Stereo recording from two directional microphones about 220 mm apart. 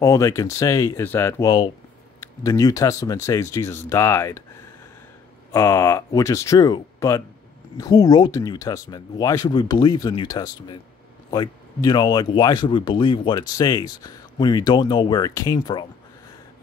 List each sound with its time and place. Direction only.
0.0 s speech: 15° left (ahead or behind)
5.5 s speech: 15° left (ahead or behind)